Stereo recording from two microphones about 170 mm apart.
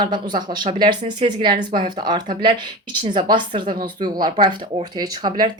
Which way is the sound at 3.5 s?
30° right (ahead or behind).